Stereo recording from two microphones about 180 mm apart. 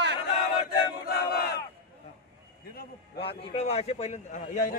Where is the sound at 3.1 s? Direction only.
35° left (ahead or behind).